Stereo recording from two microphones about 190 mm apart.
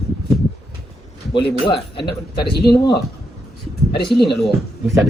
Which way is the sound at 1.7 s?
25° left (ahead or behind).